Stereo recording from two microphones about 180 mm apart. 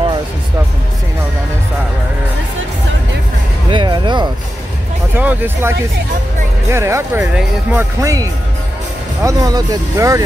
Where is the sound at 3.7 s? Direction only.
25° right (ahead or behind).